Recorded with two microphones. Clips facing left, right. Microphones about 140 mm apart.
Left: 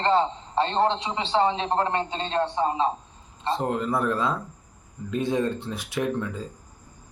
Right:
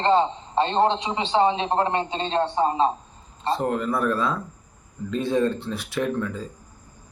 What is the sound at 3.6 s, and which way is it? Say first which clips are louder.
Speech: right 1 dB; 20° left (ahead or behind).